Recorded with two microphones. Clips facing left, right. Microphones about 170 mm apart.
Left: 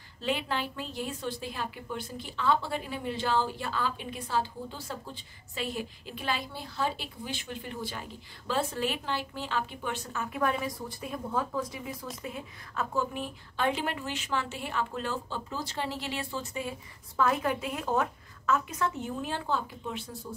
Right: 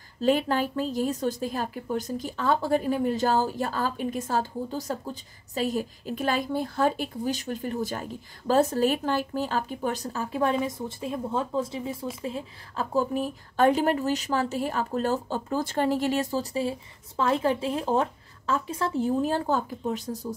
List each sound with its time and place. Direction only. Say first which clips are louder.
0.2 s a woman's voice: right 8 dB; 45° right (ahead or behind)